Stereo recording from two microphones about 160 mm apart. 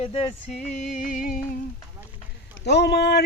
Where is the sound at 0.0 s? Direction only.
40° left (ahead or behind); by 1.4 s 55° left (ahead or behind).